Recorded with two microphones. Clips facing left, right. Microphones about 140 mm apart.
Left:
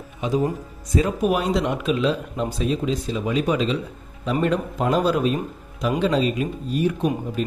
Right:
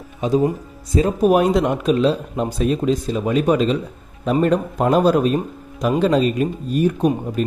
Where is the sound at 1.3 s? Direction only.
50° right (ahead or behind).